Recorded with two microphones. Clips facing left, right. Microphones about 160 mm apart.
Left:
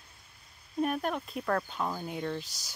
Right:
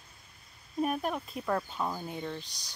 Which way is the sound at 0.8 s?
5° right (ahead or behind).